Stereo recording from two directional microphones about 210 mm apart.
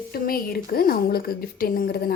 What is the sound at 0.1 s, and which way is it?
A woman's voice, 45° left (ahead or behind).